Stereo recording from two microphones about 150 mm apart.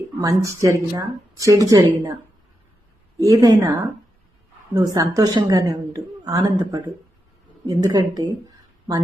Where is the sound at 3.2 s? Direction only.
25° right (ahead or behind).